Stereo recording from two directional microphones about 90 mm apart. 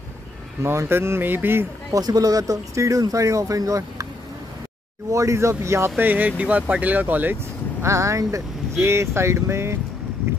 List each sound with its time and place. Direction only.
0.6 s speech: 30° right (ahead or behind)
1.9 s speech: 45° right (ahead or behind)
5.1 s speech: 35° right (ahead or behind)
5.9 s speech: 20° right (ahead or behind)
7.8 s speech: 35° right (ahead or behind)